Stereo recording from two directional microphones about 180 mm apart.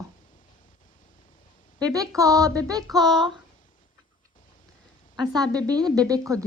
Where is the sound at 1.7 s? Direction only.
20° right (ahead or behind).